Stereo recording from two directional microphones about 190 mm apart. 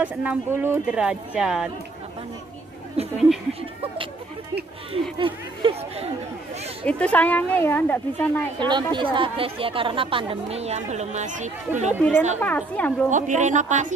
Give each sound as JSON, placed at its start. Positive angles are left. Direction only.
{"t": 0.0, "sound": "speech", "side_deg": -10}
{"t": 3.0, "sound": "speech", "side_deg": -30}
{"t": 5.2, "sound": "a woman's voice", "side_deg": -30}
{"t": 6.9, "sound": "a woman's voice", "side_deg": 5}
{"t": 8.5, "sound": "a woman's voice", "side_deg": -25}
{"t": 12.4, "sound": "a woman's voice", "side_deg": 10}
{"t": 13.1, "sound": "speech", "side_deg": -40}